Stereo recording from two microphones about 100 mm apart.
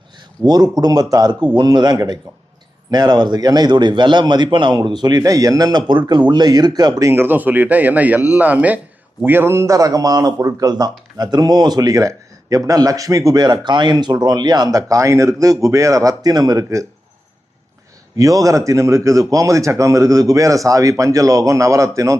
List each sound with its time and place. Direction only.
0.4 s a man's voice: 40° right (ahead or behind)
18.2 s speech: 35° right (ahead or behind)